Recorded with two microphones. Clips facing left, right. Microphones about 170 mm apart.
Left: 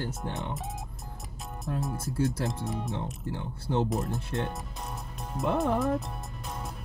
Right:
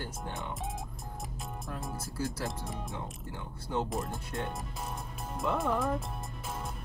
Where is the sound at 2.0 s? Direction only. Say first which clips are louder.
Left 6 dB; 25° left (ahead or behind).